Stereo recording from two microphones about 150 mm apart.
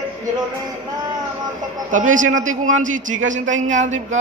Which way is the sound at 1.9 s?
60° right (ahead or behind).